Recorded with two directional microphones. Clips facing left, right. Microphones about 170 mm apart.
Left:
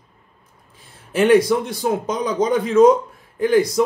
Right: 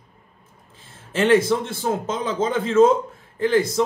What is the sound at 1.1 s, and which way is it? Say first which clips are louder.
A man's voice: left 3 dB; 15° left (ahead or behind).